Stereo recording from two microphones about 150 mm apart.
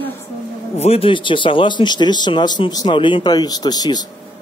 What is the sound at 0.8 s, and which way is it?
Speech, 40° left (ahead or behind).